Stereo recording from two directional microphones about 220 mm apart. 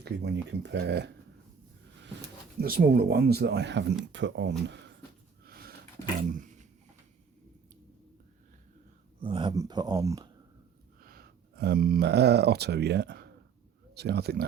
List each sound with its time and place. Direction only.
0.0 s speech: 50° right (ahead or behind)
2.6 s speech: 45° right (ahead or behind)
5.5 s a sound: 45° right (ahead or behind)
9.2 s speech: 20° right (ahead or behind)
11.0 s speech: 45° right (ahead or behind)